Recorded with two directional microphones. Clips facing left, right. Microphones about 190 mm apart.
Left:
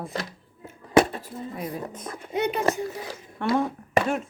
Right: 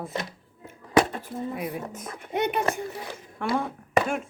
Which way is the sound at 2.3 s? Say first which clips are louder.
Left 1 dB; 60° right (ahead or behind).